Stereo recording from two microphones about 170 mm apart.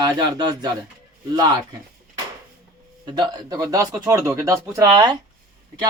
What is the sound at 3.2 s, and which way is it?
Speech, 25° right (ahead or behind).